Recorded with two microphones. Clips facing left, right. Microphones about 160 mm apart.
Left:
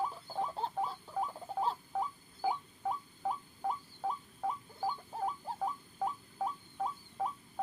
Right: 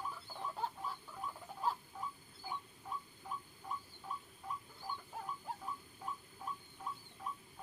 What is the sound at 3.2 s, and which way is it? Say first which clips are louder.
Rodents: left 13 dB; 80° left.